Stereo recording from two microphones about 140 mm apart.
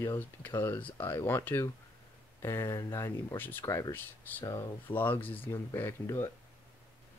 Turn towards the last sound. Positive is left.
turn(degrees=20)  # may be behind; listen again after turning